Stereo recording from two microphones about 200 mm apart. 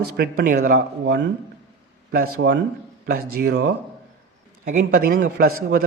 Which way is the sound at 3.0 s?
50° right (ahead or behind).